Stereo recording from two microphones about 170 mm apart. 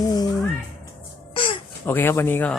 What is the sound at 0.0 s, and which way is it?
Music, 20° left (ahead or behind).